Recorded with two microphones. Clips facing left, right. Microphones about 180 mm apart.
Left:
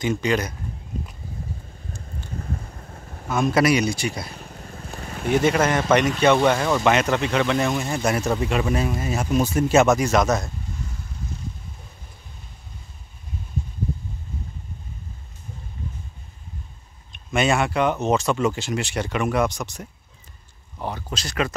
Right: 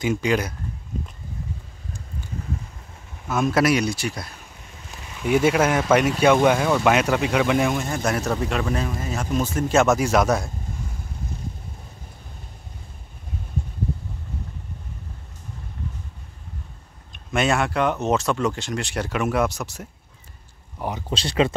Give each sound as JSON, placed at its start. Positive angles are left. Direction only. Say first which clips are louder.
{"t": 0.0, "sound": "speech", "louder": "even", "side_deg": -5}
{"t": 2.9, "sound": "a sound", "louder": "left 5 dB", "side_deg": 45}
{"t": 3.3, "sound": "speech", "louder": "left 1 dB", "side_deg": -5}
{"t": 4.4, "sound": "vehicle", "louder": "left 7 dB", "side_deg": 50}
{"t": 5.0, "sound": "a sound", "louder": "even", "side_deg": 55}
{"t": 5.3, "sound": "speech", "louder": "right 1 dB", "side_deg": -5}
{"t": 7.8, "sound": "speech", "louder": "left 1 dB", "side_deg": 5}
{"t": 9.8, "sound": "speech", "louder": "even", "side_deg": -5}
{"t": 17.1, "sound": "speech", "louder": "left 1 dB", "side_deg": 0}
{"t": 21.1, "sound": "speech", "louder": "right 6 dB", "side_deg": -30}